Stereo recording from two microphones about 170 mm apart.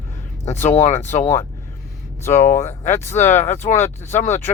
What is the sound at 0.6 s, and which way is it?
Speech, 40° left (ahead or behind).